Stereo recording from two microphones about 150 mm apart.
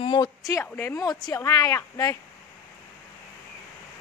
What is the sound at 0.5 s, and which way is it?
Speech, 15° left (ahead or behind).